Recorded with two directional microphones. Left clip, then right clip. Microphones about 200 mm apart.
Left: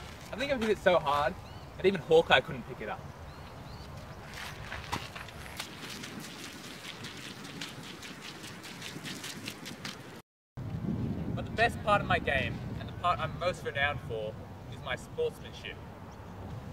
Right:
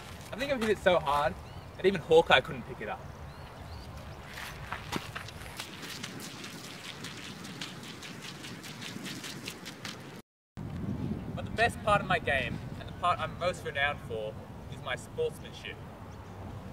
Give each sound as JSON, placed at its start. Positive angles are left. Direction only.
{"t": 0.3, "sound": "speech", "side_deg": -10}
{"t": 4.9, "sound": "run", "side_deg": 0}
{"t": 7.0, "sound": "rain on surface", "side_deg": 0}
{"t": 8.8, "sound": "a sound", "side_deg": 0}
{"t": 11.3, "sound": "speech", "side_deg": -5}